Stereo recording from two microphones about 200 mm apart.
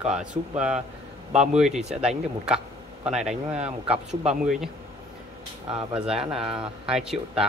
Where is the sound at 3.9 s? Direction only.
30° right (ahead or behind).